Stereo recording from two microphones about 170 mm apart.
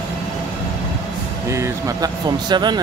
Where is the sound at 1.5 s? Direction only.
15° right (ahead or behind).